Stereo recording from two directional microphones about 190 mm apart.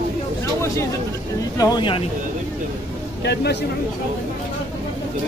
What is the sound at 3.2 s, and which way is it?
Speech, 60° left (ahead or behind).